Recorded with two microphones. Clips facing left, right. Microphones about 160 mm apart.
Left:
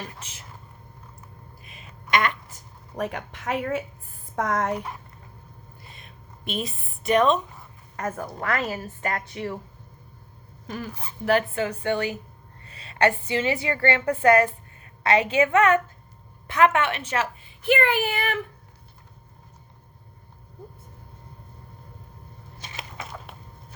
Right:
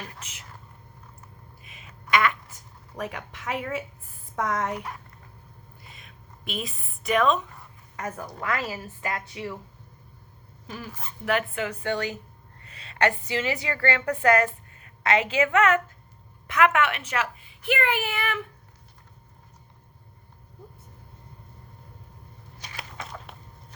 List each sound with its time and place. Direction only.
0.0 s speech: 30° left (ahead or behind)
1.6 s quack: 10° right (ahead or behind)
2.9 s speech: 40° left (ahead or behind)
5.8 s a sound: 35° left (ahead or behind)
7.9 s speech: 50° left (ahead or behind)
11.3 s a woman's voice: 30° left (ahead or behind)
11.9 s speech: 15° left (ahead or behind)
12.6 s a woman's voice: 30° left (ahead or behind)
22.5 s a sound: 25° left (ahead or behind)
23.0 s a sound: 5° left (ahead or behind)